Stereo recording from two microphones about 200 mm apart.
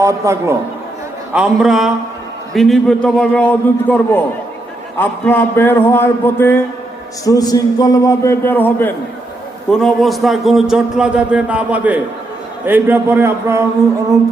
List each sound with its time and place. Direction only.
0.0 s a man's voice: 15° right (ahead or behind)
1.3 s a man's voice: 5° right (ahead or behind)